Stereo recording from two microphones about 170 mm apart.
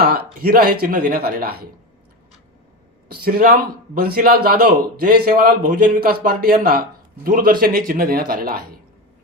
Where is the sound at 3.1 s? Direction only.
60° right (ahead or behind).